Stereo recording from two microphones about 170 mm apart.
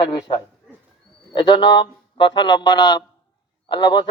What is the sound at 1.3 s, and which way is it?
A man's voice, 25° left (ahead or behind).